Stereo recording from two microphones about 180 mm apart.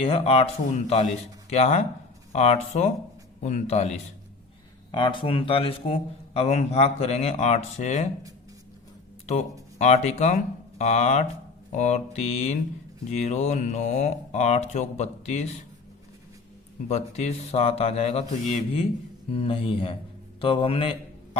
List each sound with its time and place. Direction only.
0.0 s a man's voice: 35° left (ahead or behind)
9.2 s a man's voice: 40° left (ahead or behind)
16.9 s a man's voice: 35° left (ahead or behind)